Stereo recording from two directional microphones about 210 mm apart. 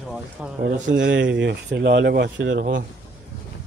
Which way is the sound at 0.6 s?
40° right (ahead or behind).